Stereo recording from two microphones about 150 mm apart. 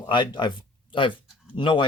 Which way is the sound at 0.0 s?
30° left (ahead or behind).